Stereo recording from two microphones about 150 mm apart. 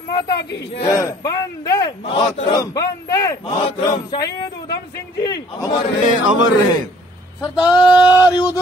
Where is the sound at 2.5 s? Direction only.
25° left (ahead or behind).